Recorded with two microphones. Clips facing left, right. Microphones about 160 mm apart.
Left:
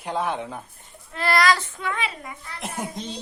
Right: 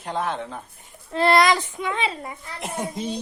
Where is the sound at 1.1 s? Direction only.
25° right (ahead or behind).